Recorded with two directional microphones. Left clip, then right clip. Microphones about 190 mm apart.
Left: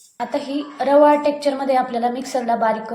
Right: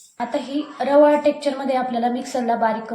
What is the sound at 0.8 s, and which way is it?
A woman's voice, 30° left (ahead or behind).